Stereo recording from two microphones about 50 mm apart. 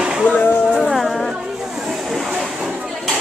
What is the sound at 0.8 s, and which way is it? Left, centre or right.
Music, centre.